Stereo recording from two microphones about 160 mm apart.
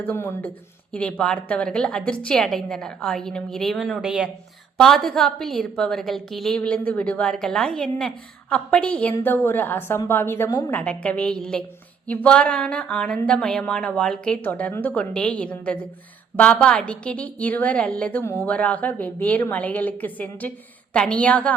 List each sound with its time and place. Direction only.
0.0 s a woman's voice: 15° left (ahead or behind)